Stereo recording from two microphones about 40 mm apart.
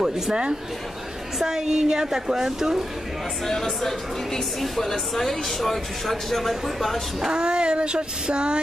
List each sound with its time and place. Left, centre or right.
0.0 s a woman's voice: centre
3.4 s a woman's voice: centre
7.2 s female singing: right